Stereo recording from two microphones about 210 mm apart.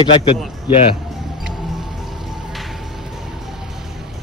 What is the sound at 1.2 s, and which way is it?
Music, centre (ahead or behind).